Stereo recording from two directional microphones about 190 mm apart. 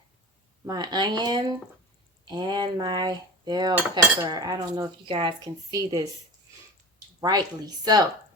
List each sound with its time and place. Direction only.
0.6 s cutlery: 20° right (ahead or behind)
7.2 s cutlery: 20° right (ahead or behind)